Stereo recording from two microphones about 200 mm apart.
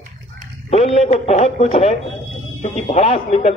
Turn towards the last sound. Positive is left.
turn(degrees=30)  # may be behind; listen again after turning